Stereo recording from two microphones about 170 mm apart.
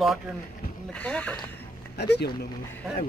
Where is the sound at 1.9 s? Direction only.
80° left.